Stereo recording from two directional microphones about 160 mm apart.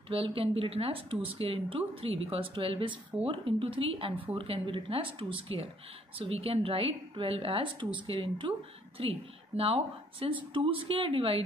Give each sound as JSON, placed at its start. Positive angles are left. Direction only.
{"t": 0.1, "sound": "a woman's voice", "side_deg": -35}